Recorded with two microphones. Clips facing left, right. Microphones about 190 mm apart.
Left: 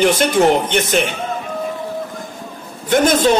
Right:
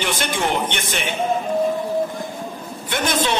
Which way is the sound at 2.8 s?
45° left (ahead or behind).